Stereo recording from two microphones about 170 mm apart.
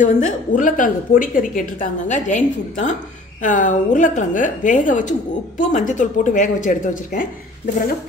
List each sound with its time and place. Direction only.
0.0 s a woman's voice: 50° left (ahead or behind)